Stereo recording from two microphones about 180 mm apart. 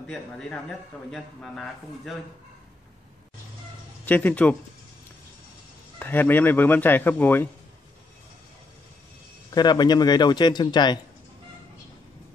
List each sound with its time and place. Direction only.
0.0 s a man's voice: 5° left (ahead or behind)
4.0 s speech: 10° left (ahead or behind)
5.9 s speech: 10° left (ahead or behind)
9.5 s a man's voice: 25° left (ahead or behind)